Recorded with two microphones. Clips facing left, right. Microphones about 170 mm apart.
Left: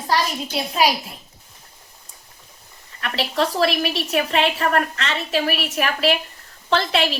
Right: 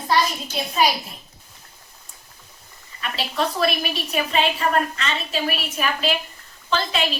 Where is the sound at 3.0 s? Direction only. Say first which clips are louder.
Left 3 dB; 70° left (ahead or behind).